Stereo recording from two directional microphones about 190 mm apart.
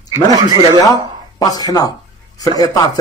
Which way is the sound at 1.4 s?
20° left (ahead or behind).